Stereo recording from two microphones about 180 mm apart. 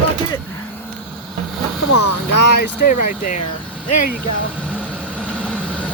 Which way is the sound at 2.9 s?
45° left (ahead or behind).